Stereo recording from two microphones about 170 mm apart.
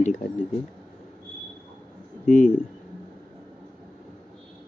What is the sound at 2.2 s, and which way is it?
Speech, 45° left (ahead or behind).